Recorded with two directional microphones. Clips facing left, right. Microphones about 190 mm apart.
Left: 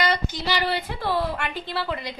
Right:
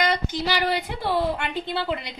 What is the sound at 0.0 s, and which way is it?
A woman's voice, 15° right (ahead or behind).